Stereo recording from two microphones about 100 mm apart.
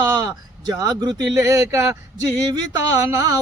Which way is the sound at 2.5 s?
40° right (ahead or behind).